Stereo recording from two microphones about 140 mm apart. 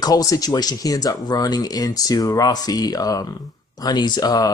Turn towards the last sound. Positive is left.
turn(degrees=25)  # may be behind; listen again after turning